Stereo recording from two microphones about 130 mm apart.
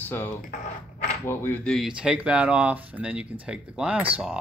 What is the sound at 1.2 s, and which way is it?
Speech, 20° left (ahead or behind).